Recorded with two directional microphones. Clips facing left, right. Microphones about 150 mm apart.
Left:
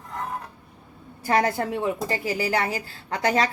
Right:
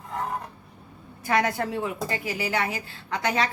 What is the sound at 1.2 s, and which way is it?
A woman's voice, 35° left (ahead or behind).